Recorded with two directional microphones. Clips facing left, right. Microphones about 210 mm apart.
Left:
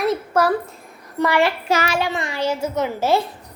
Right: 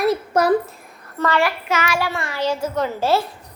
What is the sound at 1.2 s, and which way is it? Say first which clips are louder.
Speech: left 2 dB; 15° left (ahead or behind).